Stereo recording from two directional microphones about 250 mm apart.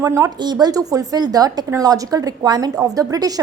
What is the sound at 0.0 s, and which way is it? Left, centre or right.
A woman's voice, centre.